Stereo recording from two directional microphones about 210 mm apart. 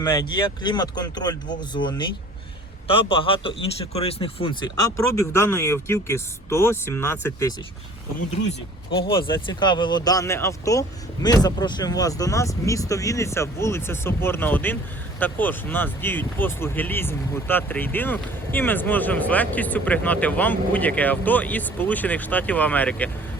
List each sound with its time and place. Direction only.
0.0 s speech: 20° left (ahead or behind)
9.0 s speech: 25° left (ahead or behind); by 23.0 s 5° left (ahead or behind)